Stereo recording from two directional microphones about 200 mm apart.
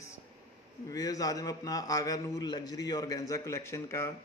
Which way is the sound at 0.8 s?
15° left (ahead or behind).